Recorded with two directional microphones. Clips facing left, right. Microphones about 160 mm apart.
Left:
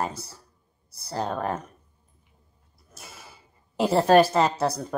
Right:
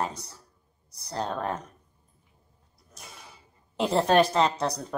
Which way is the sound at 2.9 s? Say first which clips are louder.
Left 2 dB; 5° left (ahead or behind).